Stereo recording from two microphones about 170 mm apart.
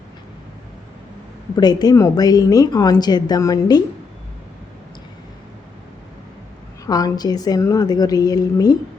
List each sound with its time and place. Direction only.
1.5 s a woman's voice: 25° left (ahead or behind)
6.8 s a woman's voice: 20° left (ahead or behind)